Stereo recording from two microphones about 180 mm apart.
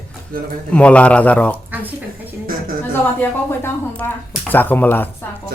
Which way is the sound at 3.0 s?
10° left (ahead or behind).